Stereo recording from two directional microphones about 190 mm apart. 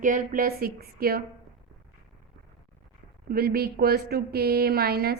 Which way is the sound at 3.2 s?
55° right (ahead or behind).